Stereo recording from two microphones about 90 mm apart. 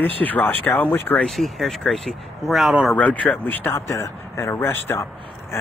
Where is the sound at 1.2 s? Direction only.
Centre (ahead or behind).